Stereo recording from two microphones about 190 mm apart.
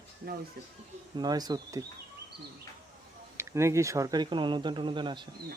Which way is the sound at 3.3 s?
15° right (ahead or behind).